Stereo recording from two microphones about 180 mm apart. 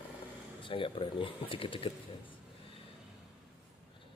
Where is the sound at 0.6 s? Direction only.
30° left (ahead or behind).